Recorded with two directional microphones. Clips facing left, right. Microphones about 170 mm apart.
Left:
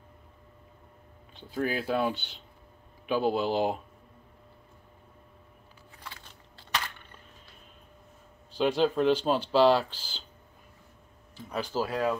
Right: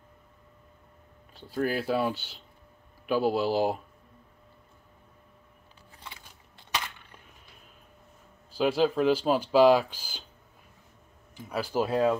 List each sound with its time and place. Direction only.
1.3 s speech: centre (ahead or behind)
6.0 s a sound: 15° right (ahead or behind)
8.5 s speech: 5° right (ahead or behind)
11.3 s speech: 10° right (ahead or behind)
11.8 s speech: 25° right (ahead or behind)